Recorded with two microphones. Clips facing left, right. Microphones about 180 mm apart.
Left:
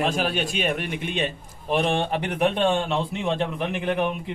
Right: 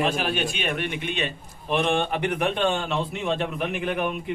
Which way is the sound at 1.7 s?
35° left (ahead or behind).